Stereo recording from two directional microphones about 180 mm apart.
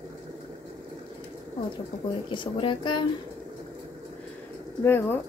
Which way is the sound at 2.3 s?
30° left (ahead or behind).